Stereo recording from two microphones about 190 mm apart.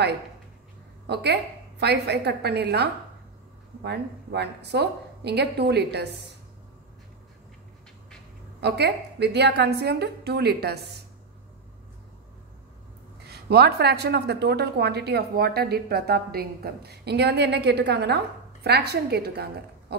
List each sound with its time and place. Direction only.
1.0 s a woman's voice: 60° right (ahead or behind)
8.5 s a woman's voice: 60° right (ahead or behind)
13.3 s a woman's voice: 60° right (ahead or behind)